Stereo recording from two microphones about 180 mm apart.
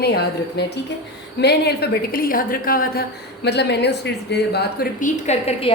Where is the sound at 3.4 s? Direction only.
70° left (ahead or behind).